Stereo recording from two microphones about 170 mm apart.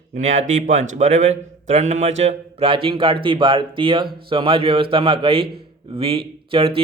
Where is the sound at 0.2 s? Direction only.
45° right (ahead or behind).